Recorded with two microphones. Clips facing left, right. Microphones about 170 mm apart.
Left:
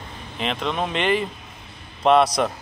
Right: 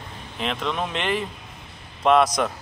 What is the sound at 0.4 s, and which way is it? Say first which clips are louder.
Speech: left 2 dB; centre (ahead or behind).